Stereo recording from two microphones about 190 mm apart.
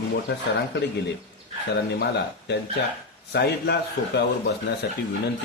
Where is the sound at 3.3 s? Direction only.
60° left (ahead or behind).